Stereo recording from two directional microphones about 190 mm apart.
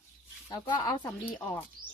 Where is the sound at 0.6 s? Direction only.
25° left (ahead or behind).